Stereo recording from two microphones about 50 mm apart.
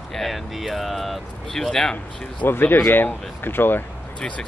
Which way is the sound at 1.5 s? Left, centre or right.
Centre.